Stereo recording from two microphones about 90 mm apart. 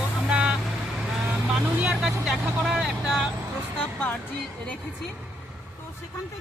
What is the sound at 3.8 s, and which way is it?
Speech, 15° left (ahead or behind).